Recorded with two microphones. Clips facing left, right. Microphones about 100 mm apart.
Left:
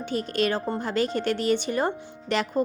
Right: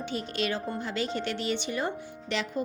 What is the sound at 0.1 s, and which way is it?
A woman's voice, 45° left (ahead or behind).